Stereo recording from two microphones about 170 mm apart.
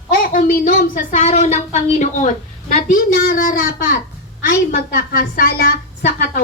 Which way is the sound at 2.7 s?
55° left (ahead or behind).